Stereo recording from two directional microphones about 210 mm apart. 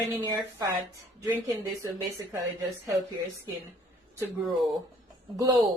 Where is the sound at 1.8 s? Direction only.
15° right (ahead or behind).